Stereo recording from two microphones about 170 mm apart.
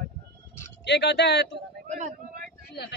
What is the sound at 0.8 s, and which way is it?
Speech, 85° left.